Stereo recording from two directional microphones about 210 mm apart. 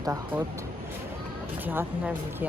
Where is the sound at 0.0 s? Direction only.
15° right (ahead or behind).